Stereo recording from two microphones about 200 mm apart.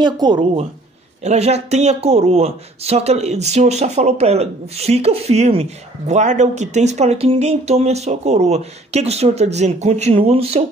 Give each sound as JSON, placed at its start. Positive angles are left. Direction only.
{"t": 0.0, "sound": "a woman's voice", "side_deg": -20}
{"t": 1.2, "sound": "speech", "side_deg": -35}